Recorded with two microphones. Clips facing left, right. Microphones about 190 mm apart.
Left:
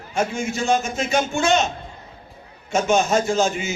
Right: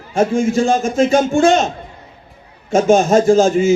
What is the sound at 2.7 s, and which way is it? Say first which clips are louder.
Speech: right 7 dB; 50° right (ahead or behind).